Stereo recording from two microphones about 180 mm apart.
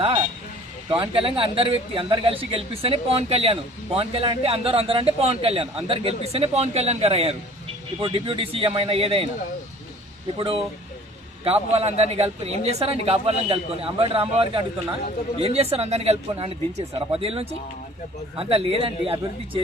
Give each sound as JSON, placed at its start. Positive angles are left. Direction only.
{"t": 0.0, "sound": "speech", "side_deg": -25}
{"t": 10.3, "sound": "speech", "side_deg": -30}